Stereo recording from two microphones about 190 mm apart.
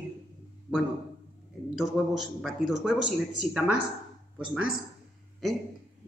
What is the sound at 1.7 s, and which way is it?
Speech, centre (ahead or behind).